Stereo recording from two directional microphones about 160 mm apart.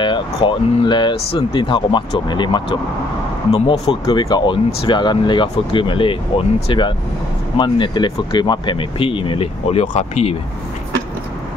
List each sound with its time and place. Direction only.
0.0 s speech: 30° left (ahead or behind)
4.0 s speech: 25° left (ahead or behind)